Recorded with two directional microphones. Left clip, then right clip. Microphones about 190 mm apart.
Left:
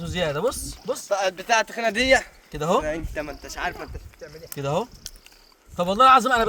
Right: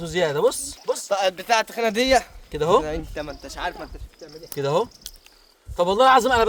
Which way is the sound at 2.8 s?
10° right (ahead or behind).